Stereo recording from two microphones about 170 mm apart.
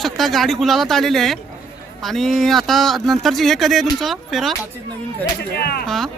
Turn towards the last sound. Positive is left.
turn(degrees=0)  # may be behind; listen again after turning